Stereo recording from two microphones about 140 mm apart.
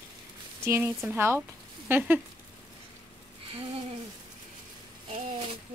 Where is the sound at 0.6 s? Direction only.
15° right (ahead or behind).